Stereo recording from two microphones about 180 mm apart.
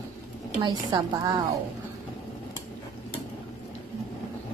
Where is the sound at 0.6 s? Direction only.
25° right (ahead or behind).